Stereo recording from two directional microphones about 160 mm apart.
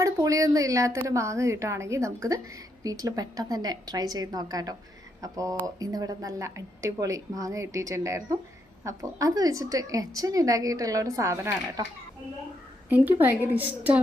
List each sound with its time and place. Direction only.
0.0 s a woman's voice: 20° right (ahead or behind)
12.9 s a woman's voice: 10° right (ahead or behind)